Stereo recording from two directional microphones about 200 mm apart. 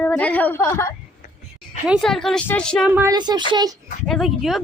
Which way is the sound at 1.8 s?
Centre (ahead or behind).